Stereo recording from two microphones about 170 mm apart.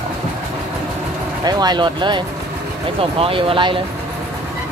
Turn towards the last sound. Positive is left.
turn(degrees=-30)  # may be behind; listen again after turning